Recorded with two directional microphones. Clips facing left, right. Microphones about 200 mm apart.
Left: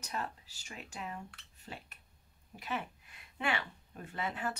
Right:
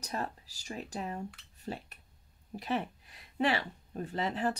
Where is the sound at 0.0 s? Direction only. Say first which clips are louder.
Right 3 dB; 35° right (ahead or behind).